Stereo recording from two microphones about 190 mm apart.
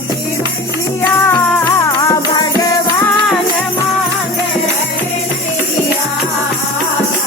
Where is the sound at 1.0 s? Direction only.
15° left (ahead or behind).